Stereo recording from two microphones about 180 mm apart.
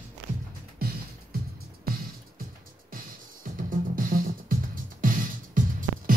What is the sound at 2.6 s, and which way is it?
Music, 50° right (ahead or behind).